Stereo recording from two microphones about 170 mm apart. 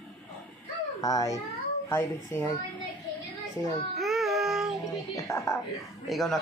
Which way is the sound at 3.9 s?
Centre (ahead or behind).